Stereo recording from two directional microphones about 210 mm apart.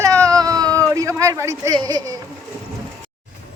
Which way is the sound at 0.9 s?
15° right (ahead or behind).